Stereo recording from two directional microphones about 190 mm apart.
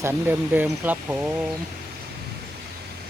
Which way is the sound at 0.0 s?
10° right (ahead or behind).